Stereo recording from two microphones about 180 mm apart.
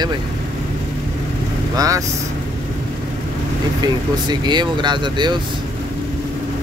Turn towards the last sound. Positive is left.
turn(degrees=-25)  # may be behind; listen again after turning